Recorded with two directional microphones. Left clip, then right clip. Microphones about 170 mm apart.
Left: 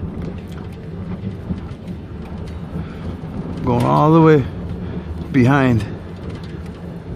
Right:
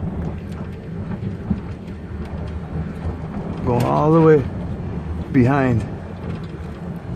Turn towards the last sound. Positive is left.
turn(degrees=35)  # may be behind; listen again after turning